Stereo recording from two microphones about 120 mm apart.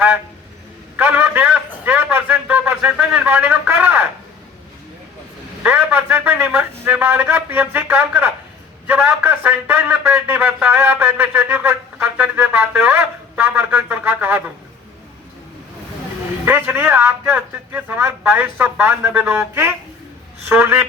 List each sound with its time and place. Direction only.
0.9 s a man's voice: 15° right (ahead or behind)
5.6 s speech: 15° right (ahead or behind)
16.5 s speech: 15° right (ahead or behind)